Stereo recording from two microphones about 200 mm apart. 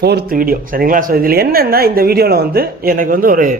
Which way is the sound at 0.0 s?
55° right (ahead or behind).